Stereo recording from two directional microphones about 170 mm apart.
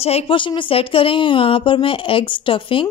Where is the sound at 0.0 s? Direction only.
35° left (ahead or behind).